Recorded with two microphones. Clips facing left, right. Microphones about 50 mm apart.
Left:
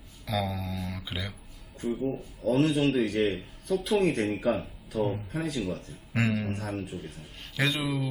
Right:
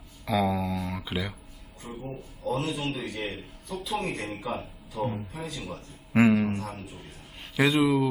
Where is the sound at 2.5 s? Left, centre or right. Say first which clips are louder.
Left 7 dB; left.